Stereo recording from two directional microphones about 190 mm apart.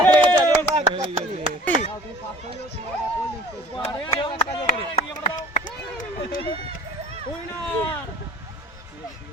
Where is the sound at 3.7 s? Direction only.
25° left (ahead or behind).